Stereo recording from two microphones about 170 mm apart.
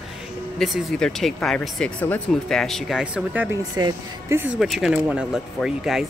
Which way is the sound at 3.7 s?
20° right (ahead or behind).